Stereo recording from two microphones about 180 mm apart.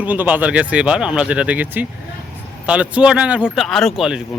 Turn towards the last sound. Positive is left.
turn(degrees=0)  # may be behind; listen again after turning